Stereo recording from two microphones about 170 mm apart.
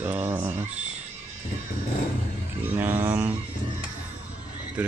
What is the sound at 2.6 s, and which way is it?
Speech, 10° right (ahead or behind).